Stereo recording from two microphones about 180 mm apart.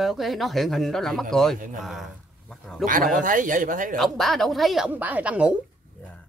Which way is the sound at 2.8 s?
50° right (ahead or behind).